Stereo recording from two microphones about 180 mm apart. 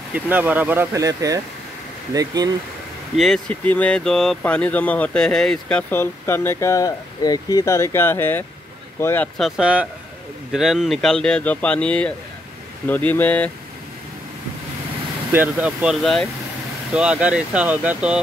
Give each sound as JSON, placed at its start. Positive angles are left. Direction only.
{"t": 0.1, "sound": "speech", "side_deg": -10}
{"t": 3.2, "sound": "speech", "side_deg": 5}
{"t": 9.4, "sound": "speech", "side_deg": -5}
{"t": 15.3, "sound": "speech", "side_deg": -10}